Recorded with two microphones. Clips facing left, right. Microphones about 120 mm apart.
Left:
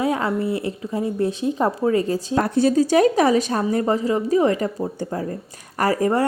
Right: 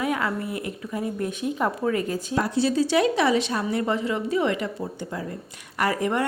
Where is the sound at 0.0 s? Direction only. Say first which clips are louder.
Left 5 dB; 30° left (ahead or behind).